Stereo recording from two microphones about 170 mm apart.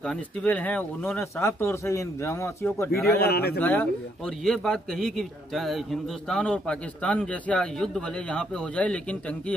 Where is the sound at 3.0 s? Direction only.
70° left (ahead or behind).